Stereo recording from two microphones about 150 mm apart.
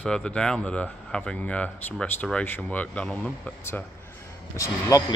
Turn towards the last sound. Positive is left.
turn(degrees=20)  # may be behind; listen again after turning